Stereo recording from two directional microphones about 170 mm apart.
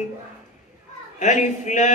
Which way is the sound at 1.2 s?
45° left (ahead or behind).